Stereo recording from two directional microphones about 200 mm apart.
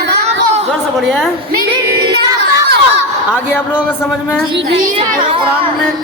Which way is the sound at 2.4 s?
55° right (ahead or behind).